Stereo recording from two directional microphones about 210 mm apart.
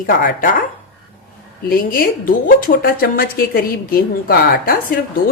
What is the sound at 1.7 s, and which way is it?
Speech, 45° left (ahead or behind).